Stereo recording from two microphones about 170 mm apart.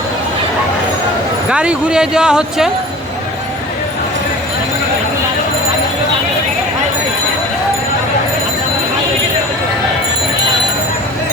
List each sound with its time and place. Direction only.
1.5 s speech: 5° right (ahead or behind)